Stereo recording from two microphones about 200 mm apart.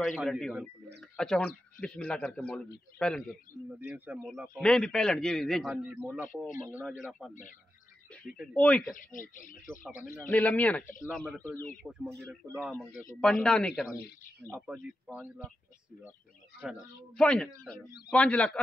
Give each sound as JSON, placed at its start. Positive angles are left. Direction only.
{"t": 0.0, "sound": "a man's voice", "side_deg": 0}
{"t": 3.9, "sound": "speech", "side_deg": -10}
{"t": 4.6, "sound": "a man's voice", "side_deg": 5}
{"t": 8.4, "sound": "speech", "side_deg": 5}
{"t": 8.9, "sound": "speech", "side_deg": 40}
{"t": 10.2, "sound": "speech", "side_deg": 10}
{"t": 11.8, "sound": "a man's voice", "side_deg": 0}
{"t": 14.7, "sound": "speech", "side_deg": -5}
{"t": 17.1, "sound": "a man's voice", "side_deg": 5}